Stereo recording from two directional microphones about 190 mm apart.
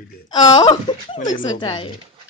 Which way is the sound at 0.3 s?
20° left (ahead or behind).